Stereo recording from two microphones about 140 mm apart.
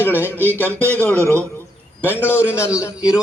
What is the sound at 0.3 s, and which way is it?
Speech, 15° right (ahead or behind).